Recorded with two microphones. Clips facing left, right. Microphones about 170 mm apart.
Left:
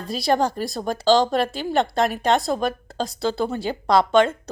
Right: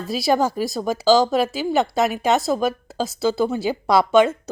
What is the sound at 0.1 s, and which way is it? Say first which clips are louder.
A woman's voice: right 1 dB; 5° right (ahead or behind).